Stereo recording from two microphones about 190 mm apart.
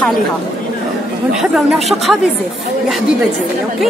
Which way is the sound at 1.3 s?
5° right (ahead or behind).